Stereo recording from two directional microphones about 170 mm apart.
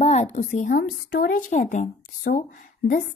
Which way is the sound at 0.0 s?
40° left (ahead or behind).